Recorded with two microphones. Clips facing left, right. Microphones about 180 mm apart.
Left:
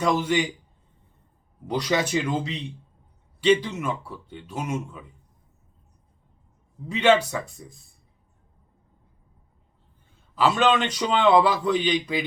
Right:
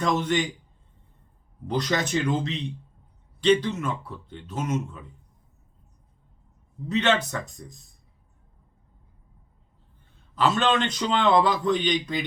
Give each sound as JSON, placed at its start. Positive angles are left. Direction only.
{"t": 0.0, "sound": "a man's voice", "side_deg": 10}
{"t": 1.7, "sound": "a man's voice", "side_deg": 10}
{"t": 6.8, "sound": "a man's voice", "side_deg": 10}
{"t": 10.3, "sound": "a man's voice", "side_deg": 5}